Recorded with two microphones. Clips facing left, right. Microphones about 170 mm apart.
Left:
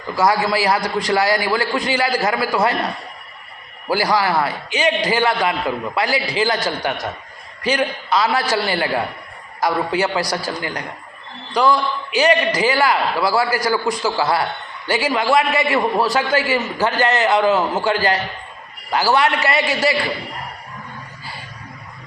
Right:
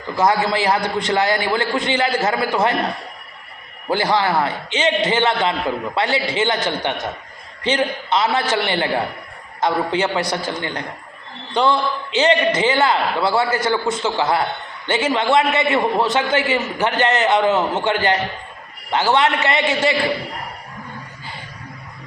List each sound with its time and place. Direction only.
0.2 s a man's voice: 20° right (ahead or behind)